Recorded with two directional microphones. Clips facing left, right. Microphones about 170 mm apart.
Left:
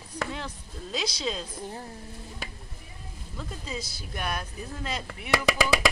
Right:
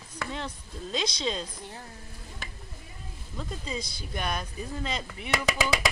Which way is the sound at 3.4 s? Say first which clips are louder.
Right 1 dB; 5° left (ahead or behind).